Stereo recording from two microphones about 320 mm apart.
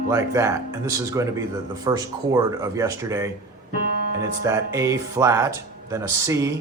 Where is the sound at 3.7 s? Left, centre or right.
Right.